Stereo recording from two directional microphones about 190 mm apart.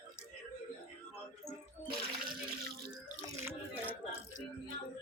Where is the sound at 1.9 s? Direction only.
50° right (ahead or behind).